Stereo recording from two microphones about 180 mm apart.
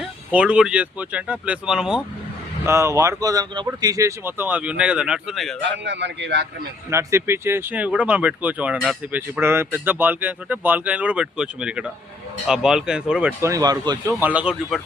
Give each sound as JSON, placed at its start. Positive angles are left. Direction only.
{"t": 0.3, "sound": "speech", "side_deg": -5}
{"t": 2.6, "sound": "speech", "side_deg": -15}
{"t": 5.5, "sound": "speech", "side_deg": -80}
{"t": 6.9, "sound": "speech", "side_deg": -15}
{"t": 13.4, "sound": "speech", "side_deg": -20}
{"t": 14.2, "sound": "speech", "side_deg": -10}